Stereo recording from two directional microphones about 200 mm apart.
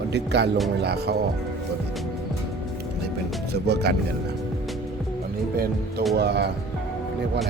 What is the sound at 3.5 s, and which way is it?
Speech, 55° right (ahead or behind).